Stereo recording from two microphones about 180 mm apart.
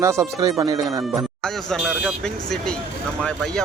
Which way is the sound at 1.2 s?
Centre (ahead or behind).